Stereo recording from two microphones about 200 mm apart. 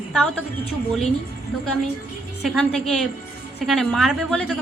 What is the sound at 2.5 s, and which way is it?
A woman's voice, centre (ahead or behind).